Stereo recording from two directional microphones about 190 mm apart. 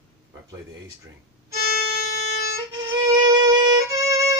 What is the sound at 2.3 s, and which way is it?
Music, 60° left (ahead or behind).